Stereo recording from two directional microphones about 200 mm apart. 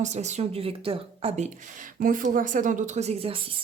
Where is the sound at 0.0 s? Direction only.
35° right (ahead or behind).